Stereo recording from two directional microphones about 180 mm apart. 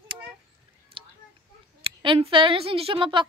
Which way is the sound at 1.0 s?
30° right (ahead or behind).